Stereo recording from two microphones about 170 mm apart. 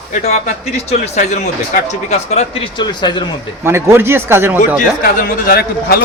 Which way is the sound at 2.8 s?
25° left (ahead or behind).